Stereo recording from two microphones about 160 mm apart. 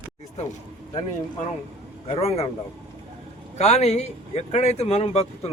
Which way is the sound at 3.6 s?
40° left (ahead or behind).